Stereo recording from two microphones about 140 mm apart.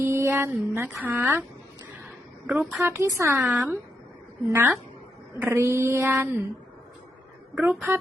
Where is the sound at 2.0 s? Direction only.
10° right (ahead or behind).